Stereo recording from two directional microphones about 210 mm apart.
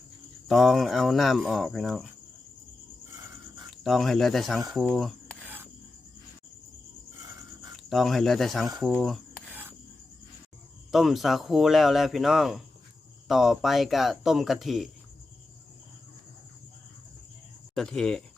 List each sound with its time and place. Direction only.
0.4 s speech: centre (ahead or behind)
3.7 s speech: centre (ahead or behind)
4.7 s cutlery: 5° right (ahead or behind)
7.9 s speech: centre (ahead or behind)
8.9 s filing: centre (ahead or behind)
10.9 s speech: centre (ahead or behind)
17.7 s speech: 5° left (ahead or behind)